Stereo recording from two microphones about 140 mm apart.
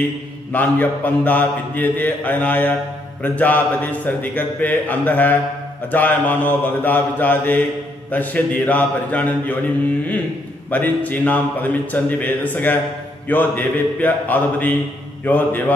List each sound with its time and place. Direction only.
0.5 s a man's voice: 10° left (ahead or behind)
10.7 s a man's voice: 10° left (ahead or behind)